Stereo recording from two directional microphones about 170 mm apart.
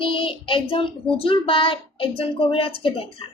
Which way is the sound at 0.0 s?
30° left (ahead or behind).